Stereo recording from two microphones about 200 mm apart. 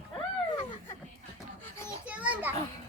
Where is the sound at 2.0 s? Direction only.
5° right (ahead or behind).